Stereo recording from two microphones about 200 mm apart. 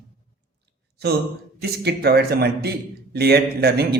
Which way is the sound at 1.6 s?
55° right (ahead or behind).